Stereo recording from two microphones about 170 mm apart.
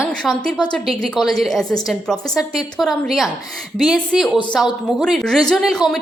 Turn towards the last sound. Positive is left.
turn(degrees=0)  # may be behind; listen again after turning